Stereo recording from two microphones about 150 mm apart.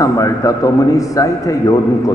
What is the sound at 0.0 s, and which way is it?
A man's voice, 20° left (ahead or behind).